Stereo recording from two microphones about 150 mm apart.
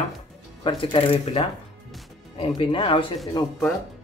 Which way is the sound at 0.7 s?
40° left (ahead or behind).